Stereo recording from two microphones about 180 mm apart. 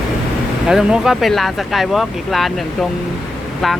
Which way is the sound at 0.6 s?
5° right (ahead or behind).